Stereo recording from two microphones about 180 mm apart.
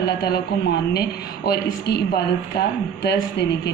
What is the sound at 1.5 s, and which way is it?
Speech, 65° left (ahead or behind).